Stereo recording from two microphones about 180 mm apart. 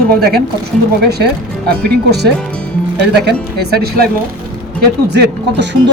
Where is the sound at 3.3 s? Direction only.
65° right (ahead or behind).